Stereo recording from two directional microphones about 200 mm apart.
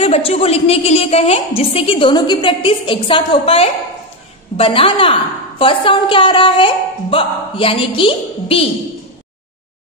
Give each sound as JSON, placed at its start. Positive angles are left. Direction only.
{"t": 0.0, "sound": "a woman's voice", "side_deg": 30}